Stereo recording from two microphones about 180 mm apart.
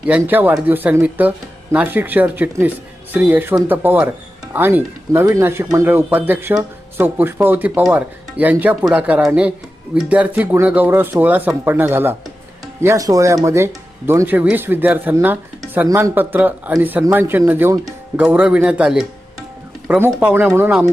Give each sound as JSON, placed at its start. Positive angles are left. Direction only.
{"t": 0.1, "sound": "speech", "side_deg": -10}